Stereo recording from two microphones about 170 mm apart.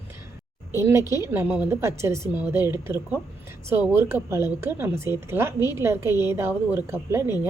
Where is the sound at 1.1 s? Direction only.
15° right (ahead or behind).